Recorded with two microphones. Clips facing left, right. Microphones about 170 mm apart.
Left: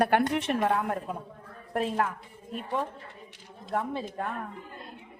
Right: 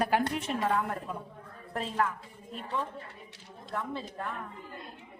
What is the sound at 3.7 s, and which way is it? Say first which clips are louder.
Speech: left 5 dB; 45° left (ahead or behind).